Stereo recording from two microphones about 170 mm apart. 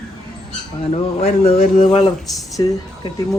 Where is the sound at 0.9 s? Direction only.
35° left (ahead or behind).